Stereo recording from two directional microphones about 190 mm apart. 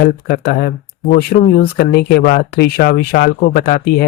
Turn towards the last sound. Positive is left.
turn(degrees=55)  # may be behind; listen again after turning